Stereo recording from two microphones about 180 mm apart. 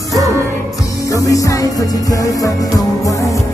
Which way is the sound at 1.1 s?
20° left (ahead or behind).